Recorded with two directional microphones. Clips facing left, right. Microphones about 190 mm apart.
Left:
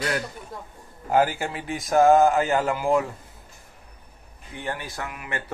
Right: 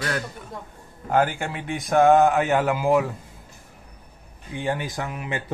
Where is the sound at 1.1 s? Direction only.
5° left (ahead or behind).